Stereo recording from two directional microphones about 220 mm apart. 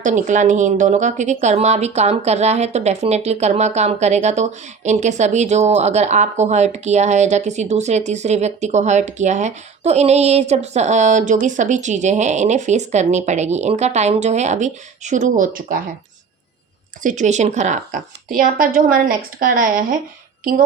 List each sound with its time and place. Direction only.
0.0 s a woman's voice: 35° right (ahead or behind)
17.0 s a woman's voice: 35° right (ahead or behind)